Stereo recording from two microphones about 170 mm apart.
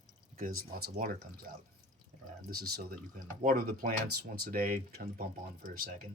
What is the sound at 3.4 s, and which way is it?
Speech, 55° right (ahead or behind).